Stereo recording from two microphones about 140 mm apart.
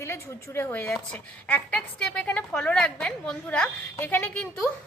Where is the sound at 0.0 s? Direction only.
15° left (ahead or behind).